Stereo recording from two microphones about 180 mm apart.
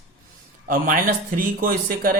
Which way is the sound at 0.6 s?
50° right (ahead or behind).